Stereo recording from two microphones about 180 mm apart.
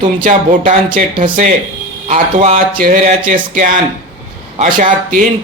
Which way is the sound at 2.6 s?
50° right (ahead or behind).